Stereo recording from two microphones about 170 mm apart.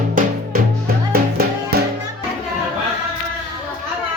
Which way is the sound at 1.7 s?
70° right (ahead or behind).